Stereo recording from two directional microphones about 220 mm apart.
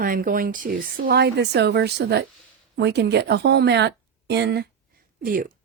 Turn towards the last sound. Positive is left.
turn(degrees=-40)  # may be behind; listen again after turning